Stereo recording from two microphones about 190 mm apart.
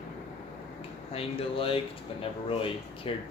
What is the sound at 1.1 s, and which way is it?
Speech, 30° left (ahead or behind).